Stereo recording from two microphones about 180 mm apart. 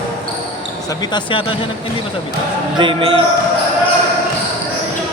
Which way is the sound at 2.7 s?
30° right (ahead or behind).